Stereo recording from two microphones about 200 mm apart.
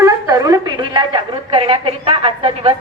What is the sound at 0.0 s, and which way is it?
A woman's voice, 15° right (ahead or behind).